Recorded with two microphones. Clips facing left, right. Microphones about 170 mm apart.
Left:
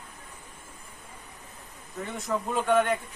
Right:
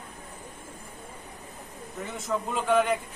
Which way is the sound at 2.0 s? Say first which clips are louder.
Even; centre (ahead or behind).